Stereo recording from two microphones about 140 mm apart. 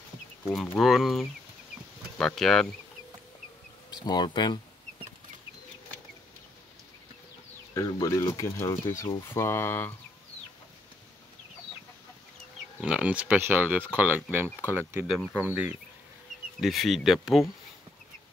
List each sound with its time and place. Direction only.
0.4 s speech: 5° left (ahead or behind)
3.9 s speech: 30° left (ahead or behind)
7.7 s speech: 25° left (ahead or behind)
12.8 s speech: 10° right (ahead or behind)
16.5 s speech: centre (ahead or behind)